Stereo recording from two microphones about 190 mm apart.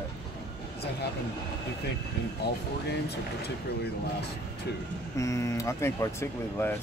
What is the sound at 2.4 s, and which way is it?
Speech, 60° left (ahead or behind).